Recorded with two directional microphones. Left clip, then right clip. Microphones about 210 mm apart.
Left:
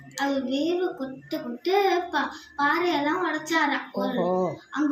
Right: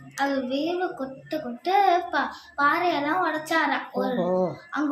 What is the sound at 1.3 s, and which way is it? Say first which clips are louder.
A child's voice: right 1 dB; 15° right (ahead or behind).